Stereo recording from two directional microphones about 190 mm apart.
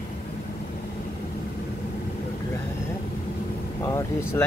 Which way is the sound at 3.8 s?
15° left (ahead or behind).